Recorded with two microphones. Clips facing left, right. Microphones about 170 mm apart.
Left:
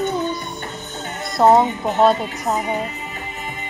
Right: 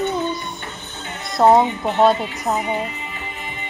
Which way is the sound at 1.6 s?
45° left (ahead or behind).